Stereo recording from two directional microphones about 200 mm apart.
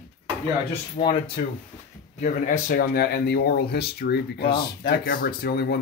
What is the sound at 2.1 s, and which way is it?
Speech, 40° left (ahead or behind).